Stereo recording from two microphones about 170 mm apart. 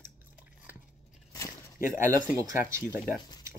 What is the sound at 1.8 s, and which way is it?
Speech, 50° left (ahead or behind).